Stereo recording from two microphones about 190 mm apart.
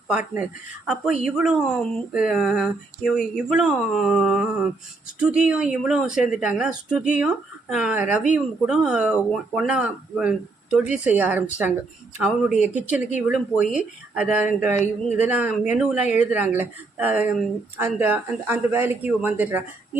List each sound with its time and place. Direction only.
0.1 s speech: 5° right (ahead or behind)
12.6 s speech: 5° right (ahead or behind)
15.4 s speech: 40° left (ahead or behind)
15.8 s speech: 5° right (ahead or behind)